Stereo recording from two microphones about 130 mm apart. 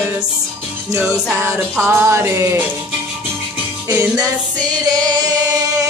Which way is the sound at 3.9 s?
20° right (ahead or behind).